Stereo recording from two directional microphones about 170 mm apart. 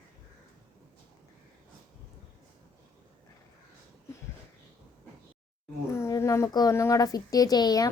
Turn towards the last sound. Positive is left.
turn(degrees=25)  # may be behind; listen again after turning